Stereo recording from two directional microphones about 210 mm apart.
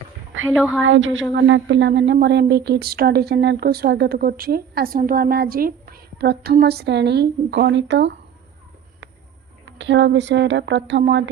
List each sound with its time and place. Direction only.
0.5 s a woman's voice: 5° right (ahead or behind)
0.8 s speech: 65° right (ahead or behind)
9.7 s speech: 60° right (ahead or behind)